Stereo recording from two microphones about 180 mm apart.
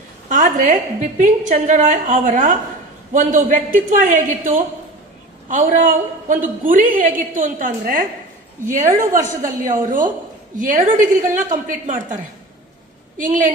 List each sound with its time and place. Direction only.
0.3 s a woman's voice: 45° right (ahead or behind)